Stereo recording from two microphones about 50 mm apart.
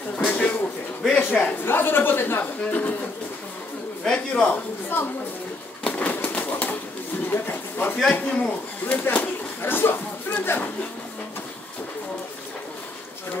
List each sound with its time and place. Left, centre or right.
0.2 s a sound: left
1.6 s a woman's voice: left
2.6 s speech: left
4.0 s a man's voice: centre
4.8 s a woman's voice: left
5.9 s bird: left
6.1 s a sound: left
7.2 s speech: left